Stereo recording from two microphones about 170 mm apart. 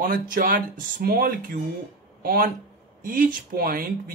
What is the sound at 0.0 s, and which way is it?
Speech, 55° right (ahead or behind).